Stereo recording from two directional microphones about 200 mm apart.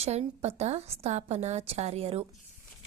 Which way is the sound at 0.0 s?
30° right (ahead or behind).